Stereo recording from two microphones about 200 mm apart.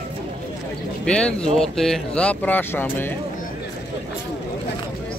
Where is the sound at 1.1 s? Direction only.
5° left (ahead or behind).